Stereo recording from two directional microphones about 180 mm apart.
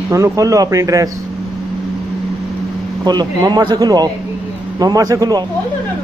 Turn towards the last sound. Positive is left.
turn(degrees=-20)  # may be behind; listen again after turning